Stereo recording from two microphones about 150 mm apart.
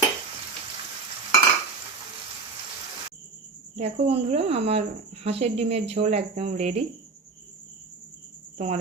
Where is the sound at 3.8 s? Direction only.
45° right (ahead or behind).